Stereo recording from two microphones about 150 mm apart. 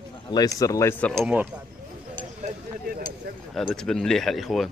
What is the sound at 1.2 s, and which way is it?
Speech, 10° right (ahead or behind).